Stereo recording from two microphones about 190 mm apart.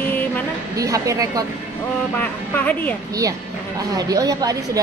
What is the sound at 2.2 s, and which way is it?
Speech, 10° left (ahead or behind).